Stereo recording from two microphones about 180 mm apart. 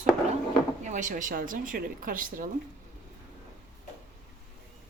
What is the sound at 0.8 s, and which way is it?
Speech, 45° right (ahead or behind).